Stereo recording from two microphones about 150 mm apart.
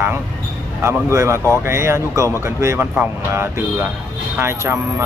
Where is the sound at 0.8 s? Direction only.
20° right (ahead or behind).